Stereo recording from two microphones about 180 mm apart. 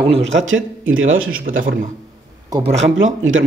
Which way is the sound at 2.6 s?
90° right.